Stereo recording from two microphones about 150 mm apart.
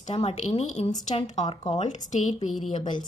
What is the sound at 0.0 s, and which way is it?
A woman's voice, 40° left (ahead or behind).